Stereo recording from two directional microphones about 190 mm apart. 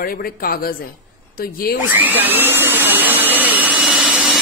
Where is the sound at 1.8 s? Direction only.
10° right (ahead or behind).